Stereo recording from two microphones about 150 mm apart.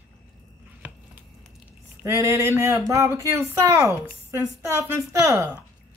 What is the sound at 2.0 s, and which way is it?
Speech, 20° right (ahead or behind).